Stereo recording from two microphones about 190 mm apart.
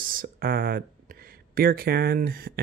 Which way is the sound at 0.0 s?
50° right (ahead or behind).